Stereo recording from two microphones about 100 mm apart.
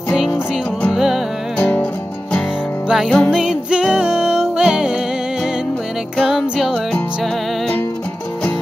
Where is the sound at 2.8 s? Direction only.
5° right (ahead or behind).